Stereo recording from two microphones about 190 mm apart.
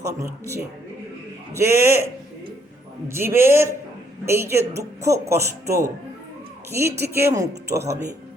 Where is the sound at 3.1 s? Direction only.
15° right (ahead or behind).